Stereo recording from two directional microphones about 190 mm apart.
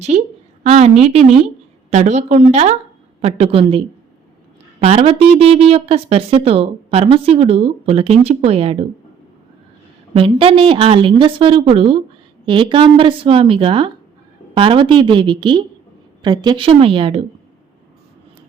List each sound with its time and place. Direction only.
0.1 s a sound: 35° right (ahead or behind)
0.6 s a woman's voice: 35° right (ahead or behind)
10.2 s speech: 30° right (ahead or behind)